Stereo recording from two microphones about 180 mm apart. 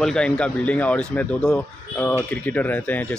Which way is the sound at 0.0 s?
5° left (ahead or behind).